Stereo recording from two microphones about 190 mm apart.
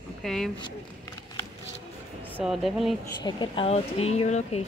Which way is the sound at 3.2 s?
25° left (ahead or behind).